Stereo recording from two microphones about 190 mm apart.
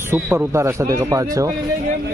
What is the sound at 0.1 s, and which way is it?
Speech, 10° right (ahead or behind).